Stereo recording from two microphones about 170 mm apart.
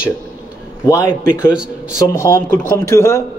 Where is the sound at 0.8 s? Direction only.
15° left (ahead or behind).